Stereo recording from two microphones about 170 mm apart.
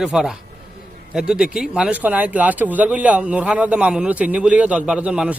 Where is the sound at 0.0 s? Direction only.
5° right (ahead or behind).